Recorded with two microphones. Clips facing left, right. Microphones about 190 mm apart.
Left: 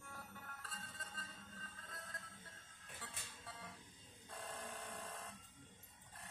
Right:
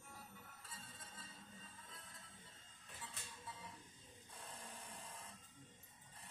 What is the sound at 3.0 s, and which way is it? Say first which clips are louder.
Music: right 1 dB; 75° left (ahead or behind).